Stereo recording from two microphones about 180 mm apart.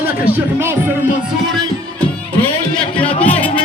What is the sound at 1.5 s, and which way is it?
Music, 5° left (ahead or behind).